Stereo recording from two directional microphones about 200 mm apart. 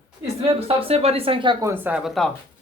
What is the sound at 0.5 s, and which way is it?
Speech, 30° right (ahead or behind).